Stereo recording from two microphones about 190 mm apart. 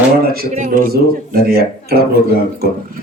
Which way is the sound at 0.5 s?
40° right (ahead or behind).